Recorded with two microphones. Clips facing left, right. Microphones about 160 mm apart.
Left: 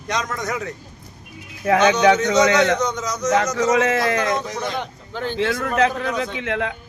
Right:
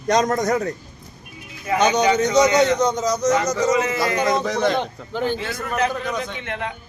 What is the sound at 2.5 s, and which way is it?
Speech, 35° right (ahead or behind).